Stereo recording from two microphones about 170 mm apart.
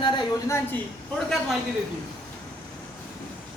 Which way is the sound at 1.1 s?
Centre (ahead or behind).